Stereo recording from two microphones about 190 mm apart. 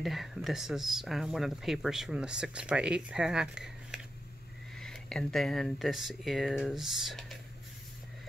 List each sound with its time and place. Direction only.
0.0 s speech: centre (ahead or behind)